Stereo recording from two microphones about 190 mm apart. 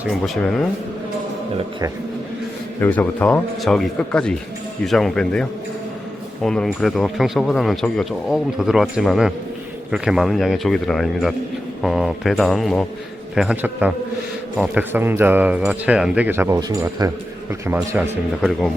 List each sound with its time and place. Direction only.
0.0 s speech: centre (ahead or behind)
2.8 s speech: 10° left (ahead or behind); by 17.1 s 20° right (ahead or behind)
17.5 s speech: 10° right (ahead or behind)